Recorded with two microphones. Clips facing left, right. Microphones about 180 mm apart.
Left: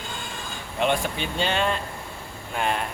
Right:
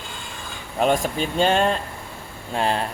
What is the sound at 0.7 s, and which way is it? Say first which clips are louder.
Speech: right 4 dB; 40° right (ahead or behind).